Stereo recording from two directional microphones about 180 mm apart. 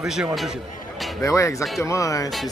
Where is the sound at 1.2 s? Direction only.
15° left (ahead or behind).